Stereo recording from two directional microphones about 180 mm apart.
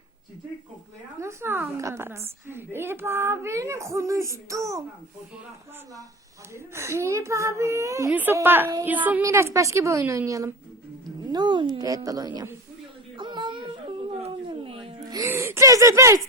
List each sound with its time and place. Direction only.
1.2 s a child's voice: 15° right (ahead or behind)
6.5 s a child's voice: 15° right (ahead or behind)
13.1 s whimper: 25° right (ahead or behind)
14.2 s a sound: 35° right (ahead or behind)
15.1 s gasp: 15° right (ahead or behind)